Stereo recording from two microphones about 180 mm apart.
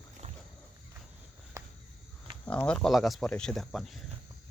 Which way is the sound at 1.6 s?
15° right (ahead or behind).